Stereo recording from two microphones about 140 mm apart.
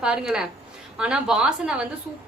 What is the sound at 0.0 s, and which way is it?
A woman's voice, 5° right (ahead or behind).